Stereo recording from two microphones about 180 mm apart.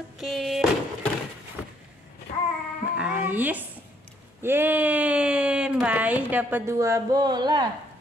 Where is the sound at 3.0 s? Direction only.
10° right (ahead or behind).